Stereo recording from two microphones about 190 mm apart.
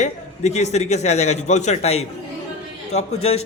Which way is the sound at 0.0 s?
35° left (ahead or behind).